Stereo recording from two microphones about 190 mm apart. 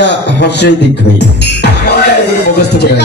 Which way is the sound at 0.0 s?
65° left (ahead or behind).